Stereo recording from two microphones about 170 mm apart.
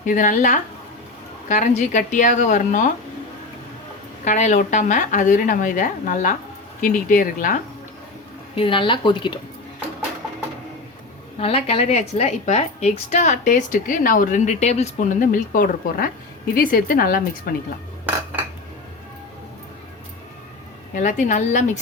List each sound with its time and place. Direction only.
0.0 s a woman's voice: 50° left (ahead or behind)
4.2 s a woman's voice: 45° left (ahead or behind)
8.5 s a woman's voice: 30° left (ahead or behind)
11.3 s a woman's voice: 35° left (ahead or behind); by 17.5 s 60° left (ahead or behind)
20.9 s a woman's voice: 45° left (ahead or behind)